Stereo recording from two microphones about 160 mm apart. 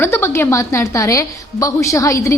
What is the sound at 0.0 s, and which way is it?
A woman's voice, 15° left (ahead or behind).